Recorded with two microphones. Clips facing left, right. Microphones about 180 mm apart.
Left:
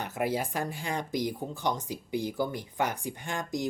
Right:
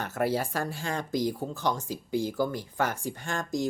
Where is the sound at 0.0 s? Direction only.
15° left (ahead or behind).